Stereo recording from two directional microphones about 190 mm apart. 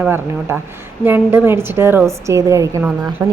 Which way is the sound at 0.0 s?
10° right (ahead or behind).